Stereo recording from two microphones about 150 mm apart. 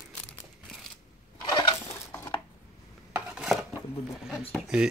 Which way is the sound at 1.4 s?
30° left (ahead or behind).